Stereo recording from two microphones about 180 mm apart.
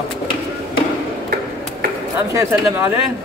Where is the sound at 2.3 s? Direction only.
15° right (ahead or behind).